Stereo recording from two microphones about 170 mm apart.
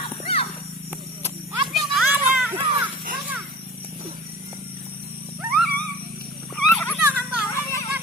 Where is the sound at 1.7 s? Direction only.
5° right (ahead or behind).